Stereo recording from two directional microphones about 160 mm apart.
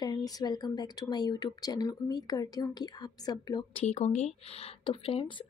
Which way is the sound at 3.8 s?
45° left (ahead or behind).